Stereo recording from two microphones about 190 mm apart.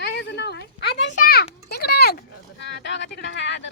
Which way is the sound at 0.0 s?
60° left (ahead or behind).